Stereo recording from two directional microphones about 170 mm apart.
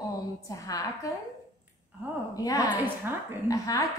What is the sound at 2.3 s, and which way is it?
Speech, 20° left (ahead or behind).